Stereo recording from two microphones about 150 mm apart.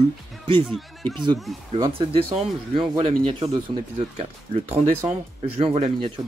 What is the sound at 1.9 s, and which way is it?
Speech, 40° right (ahead or behind).